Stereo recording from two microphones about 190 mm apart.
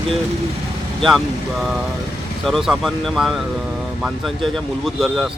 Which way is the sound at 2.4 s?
Centre (ahead or behind).